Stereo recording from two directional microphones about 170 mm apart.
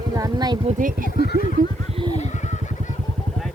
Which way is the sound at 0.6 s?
50° right (ahead or behind).